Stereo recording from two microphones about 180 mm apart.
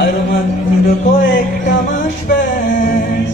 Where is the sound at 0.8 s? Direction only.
50° left (ahead or behind).